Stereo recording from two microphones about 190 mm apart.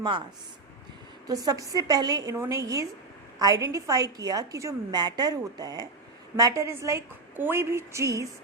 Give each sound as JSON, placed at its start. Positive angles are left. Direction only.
{"t": 1.3, "sound": "a woman's voice", "side_deg": -20}